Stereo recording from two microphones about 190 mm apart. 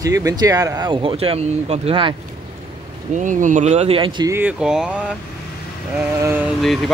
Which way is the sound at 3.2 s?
40° right (ahead or behind).